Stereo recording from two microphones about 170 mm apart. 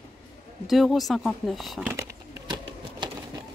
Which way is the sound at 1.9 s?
15° right (ahead or behind).